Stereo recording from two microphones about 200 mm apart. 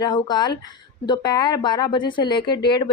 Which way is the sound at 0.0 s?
20° left (ahead or behind).